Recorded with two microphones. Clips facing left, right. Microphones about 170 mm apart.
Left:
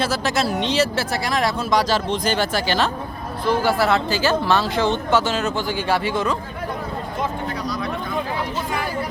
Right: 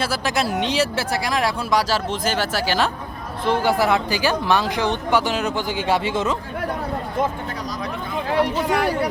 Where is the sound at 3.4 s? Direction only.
20° right (ahead or behind).